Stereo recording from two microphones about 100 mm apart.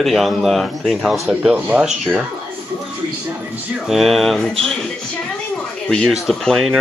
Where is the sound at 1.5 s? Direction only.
15° right (ahead or behind).